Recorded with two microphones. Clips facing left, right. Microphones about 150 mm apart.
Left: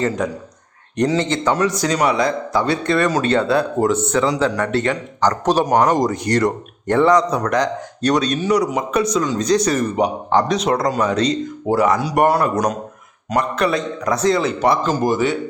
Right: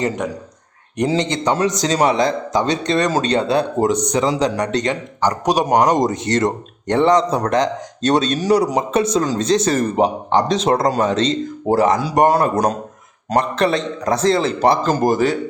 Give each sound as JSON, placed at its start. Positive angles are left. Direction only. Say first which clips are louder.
{"t": 1.0, "sound": "a man's voice", "louder": "even", "side_deg": -20}
{"t": 10.8, "sound": "a man's voice", "louder": "right 2 dB", "side_deg": -35}
{"t": 11.1, "sound": "a man's voice", "louder": "even", "side_deg": -25}
{"t": 12.3, "sound": "a man's voice", "louder": "right 1 dB", "side_deg": -30}